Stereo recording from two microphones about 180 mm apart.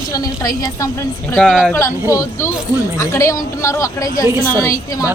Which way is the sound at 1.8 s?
15° left (ahead or behind).